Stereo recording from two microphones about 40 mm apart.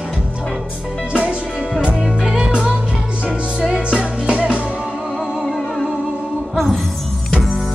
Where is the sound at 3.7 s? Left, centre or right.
Right.